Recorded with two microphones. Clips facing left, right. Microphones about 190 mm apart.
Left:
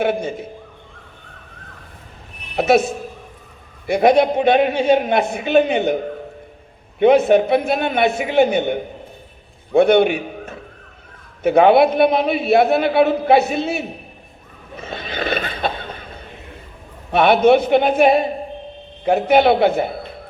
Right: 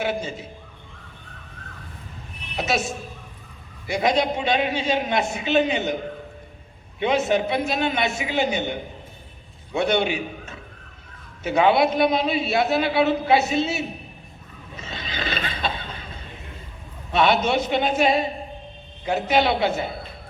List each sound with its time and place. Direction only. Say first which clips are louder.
0.0 s a man's voice: left 6 dB; 55° left (ahead or behind)
2.6 s a man's voice: left 10 dB; 60° left (ahead or behind)
7.0 s a man's voice: left 9 dB; 55° left (ahead or behind)
14.8 s neigh: left 6 dB; 55° left (ahead or behind)
17.1 s a man's voice: left 8 dB; 55° left (ahead or behind)